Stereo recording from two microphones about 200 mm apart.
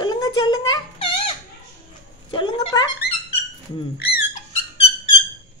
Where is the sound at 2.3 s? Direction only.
25° left (ahead or behind).